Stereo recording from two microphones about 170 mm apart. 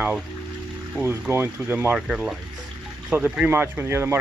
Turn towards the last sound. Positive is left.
turn(degrees=-15)  # may be behind; listen again after turning